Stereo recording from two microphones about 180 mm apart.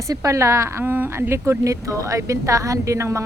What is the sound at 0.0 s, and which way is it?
Speech, 20° right (ahead or behind).